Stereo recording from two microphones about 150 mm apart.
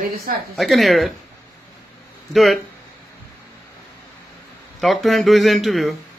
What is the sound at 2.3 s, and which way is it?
Speech, centre (ahead or behind).